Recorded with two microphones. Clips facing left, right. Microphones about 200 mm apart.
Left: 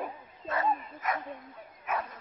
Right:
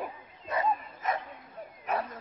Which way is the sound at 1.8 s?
35° right (ahead or behind).